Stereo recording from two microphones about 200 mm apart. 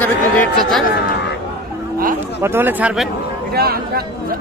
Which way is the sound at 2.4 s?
10° right (ahead or behind).